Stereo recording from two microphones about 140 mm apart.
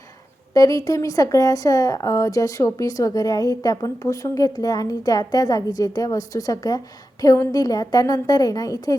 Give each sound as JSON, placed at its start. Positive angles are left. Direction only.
{"t": 0.5, "sound": "a woman's voice", "side_deg": 25}